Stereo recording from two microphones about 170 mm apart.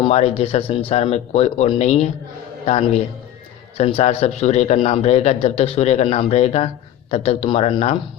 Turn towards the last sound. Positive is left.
turn(degrees=35)  # may be behind; listen again after turning